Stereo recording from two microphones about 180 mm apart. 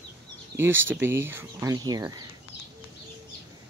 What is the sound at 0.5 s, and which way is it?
Speech, 15° right (ahead or behind).